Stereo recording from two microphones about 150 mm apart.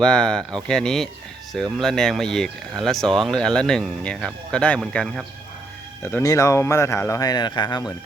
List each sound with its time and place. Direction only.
0.0 s speech: 5° left (ahead or behind)
6.0 s speech: 15° left (ahead or behind)